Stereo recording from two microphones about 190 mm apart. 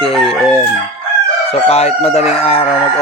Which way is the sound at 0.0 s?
30° left (ahead or behind).